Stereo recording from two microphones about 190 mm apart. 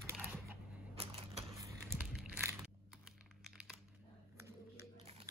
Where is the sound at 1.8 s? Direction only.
5° right (ahead or behind).